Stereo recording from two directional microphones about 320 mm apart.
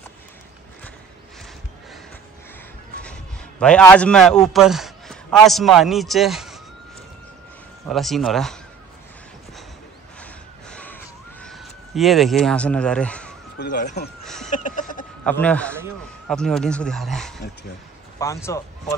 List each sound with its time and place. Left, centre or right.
3.0 s a man's voice: centre
7.9 s speech: centre
10.2 s a sound: centre
11.4 s speech: centre
13.6 s speech: left
14.2 s a sound: centre
14.5 s chicken: left
15.2 s speech: centre